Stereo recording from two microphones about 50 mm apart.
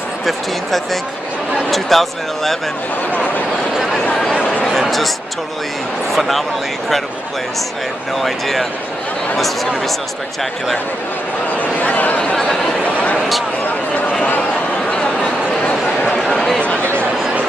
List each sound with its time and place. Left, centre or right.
0.2 s speech: centre
3.1 s speech: left
3.7 s a sound: centre
6.1 s speech: centre
8.2 s speech: centre
11.5 s speech: left
12.4 s speech: centre
12.8 s speech: left
14.9 s a sound: left
16.2 s speech: centre